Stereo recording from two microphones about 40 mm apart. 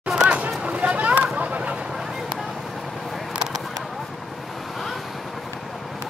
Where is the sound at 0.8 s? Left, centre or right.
Right.